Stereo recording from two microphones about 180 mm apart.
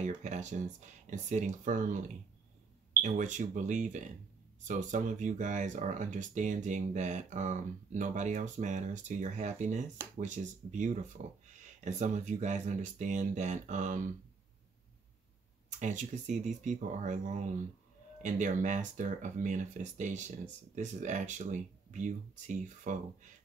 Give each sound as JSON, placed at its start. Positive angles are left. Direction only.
{"t": 0.0, "sound": "speech", "side_deg": -40}
{"t": 3.0, "sound": "speech", "side_deg": -45}
{"t": 15.8, "sound": "speech", "side_deg": -45}